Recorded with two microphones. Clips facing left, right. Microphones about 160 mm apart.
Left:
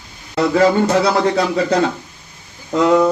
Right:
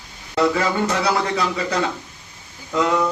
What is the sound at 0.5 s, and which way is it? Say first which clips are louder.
A man's voice: left 8 dB; 35° left (ahead or behind).